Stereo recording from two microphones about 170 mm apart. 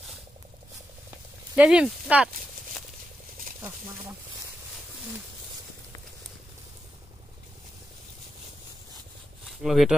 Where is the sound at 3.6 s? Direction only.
15° right (ahead or behind).